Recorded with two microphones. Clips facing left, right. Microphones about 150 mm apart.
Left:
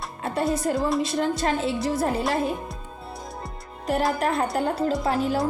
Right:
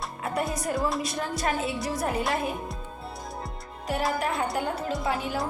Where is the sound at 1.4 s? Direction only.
25° left (ahead or behind).